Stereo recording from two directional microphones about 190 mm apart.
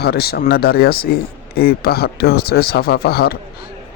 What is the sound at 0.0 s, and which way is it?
Speech, 55° left (ahead or behind).